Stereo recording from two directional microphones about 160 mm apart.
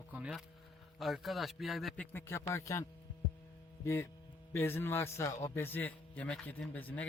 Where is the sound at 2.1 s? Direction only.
15° left (ahead or behind).